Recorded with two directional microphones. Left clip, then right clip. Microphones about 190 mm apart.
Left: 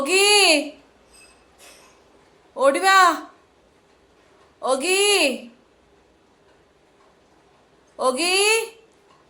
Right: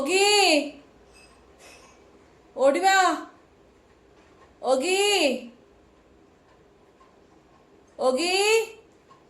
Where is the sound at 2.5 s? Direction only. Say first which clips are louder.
Left 4 dB; 10° right (ahead or behind).